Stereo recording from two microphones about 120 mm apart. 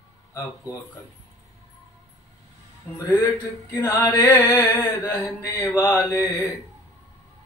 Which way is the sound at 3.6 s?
25° left (ahead or behind).